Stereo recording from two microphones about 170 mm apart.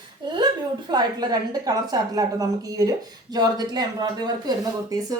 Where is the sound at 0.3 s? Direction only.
25° right (ahead or behind).